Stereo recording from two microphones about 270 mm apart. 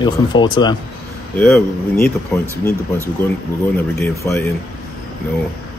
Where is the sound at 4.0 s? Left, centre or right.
Centre.